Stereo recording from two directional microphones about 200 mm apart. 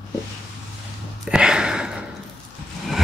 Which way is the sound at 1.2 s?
5° right (ahead or behind).